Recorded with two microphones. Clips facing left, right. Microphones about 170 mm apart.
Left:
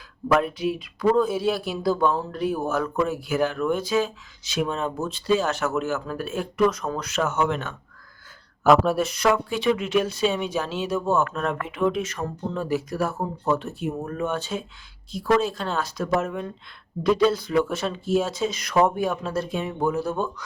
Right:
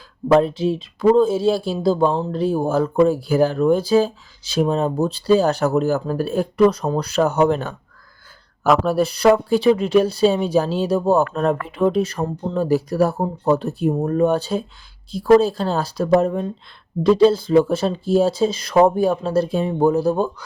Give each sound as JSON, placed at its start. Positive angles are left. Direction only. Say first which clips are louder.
{"t": 0.3, "sound": "speech", "louder": "right 6 dB", "side_deg": -30}
{"t": 8.6, "sound": "speech", "louder": "even", "side_deg": 0}
{"t": 9.0, "sound": "speech", "louder": "right 7 dB", "side_deg": -35}